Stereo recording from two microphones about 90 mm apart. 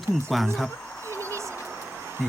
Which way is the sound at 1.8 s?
20° right (ahead or behind).